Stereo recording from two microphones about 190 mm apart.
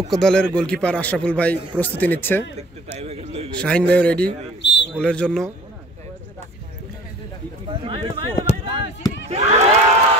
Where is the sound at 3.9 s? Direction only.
5° left (ahead or behind).